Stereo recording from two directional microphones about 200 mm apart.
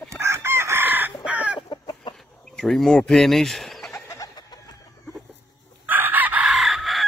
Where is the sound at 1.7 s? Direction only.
20° left (ahead or behind).